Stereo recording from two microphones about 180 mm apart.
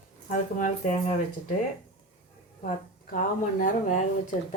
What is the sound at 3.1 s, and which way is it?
Speech, 45° left (ahead or behind).